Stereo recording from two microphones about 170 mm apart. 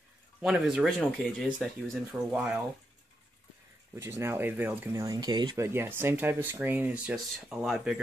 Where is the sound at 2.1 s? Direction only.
5° right (ahead or behind).